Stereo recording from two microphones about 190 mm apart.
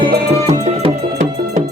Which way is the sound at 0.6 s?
35° right (ahead or behind).